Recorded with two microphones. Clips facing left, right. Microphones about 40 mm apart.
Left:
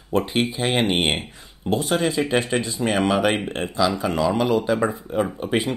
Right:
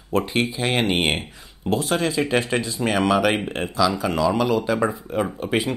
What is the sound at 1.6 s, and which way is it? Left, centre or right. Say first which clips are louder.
Speech: even; centre.